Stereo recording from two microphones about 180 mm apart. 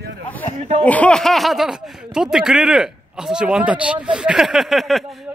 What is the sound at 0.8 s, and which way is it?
A man's voice, 5° left (ahead or behind).